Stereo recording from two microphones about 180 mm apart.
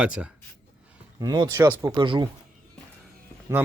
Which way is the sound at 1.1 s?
20° right (ahead or behind).